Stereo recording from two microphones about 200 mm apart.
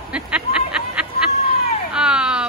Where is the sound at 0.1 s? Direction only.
5° right (ahead or behind).